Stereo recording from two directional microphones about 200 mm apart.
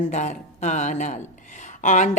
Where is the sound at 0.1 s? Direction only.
35° left (ahead or behind).